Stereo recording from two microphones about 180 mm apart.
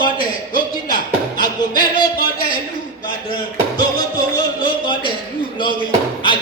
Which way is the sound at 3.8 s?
25° left (ahead or behind).